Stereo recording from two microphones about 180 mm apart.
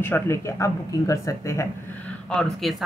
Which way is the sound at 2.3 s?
5° left (ahead or behind).